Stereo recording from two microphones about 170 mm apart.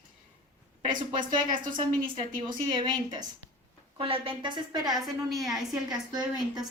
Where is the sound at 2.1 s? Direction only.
25° right (ahead or behind).